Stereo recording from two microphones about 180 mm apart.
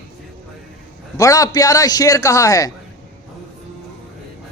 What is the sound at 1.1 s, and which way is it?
A man's voice, 20° left (ahead or behind).